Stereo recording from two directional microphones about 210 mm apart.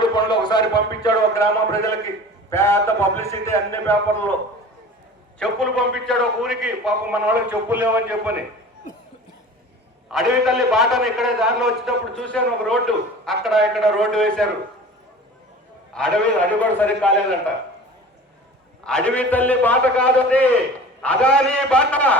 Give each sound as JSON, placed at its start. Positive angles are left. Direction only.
{"t": 0.0, "sound": "a man's voice", "side_deg": 20}
{"t": 5.4, "sound": "a man's voice", "side_deg": 5}
{"t": 10.1, "sound": "a man's voice", "side_deg": 0}
{"t": 16.0, "sound": "a man's voice", "side_deg": 5}
{"t": 18.9, "sound": "a man's voice", "side_deg": 5}